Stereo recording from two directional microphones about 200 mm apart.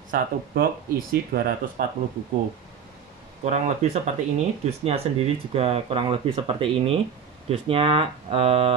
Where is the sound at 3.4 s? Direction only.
35° right (ahead or behind).